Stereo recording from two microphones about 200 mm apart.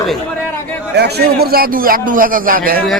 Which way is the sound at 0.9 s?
55° right (ahead or behind).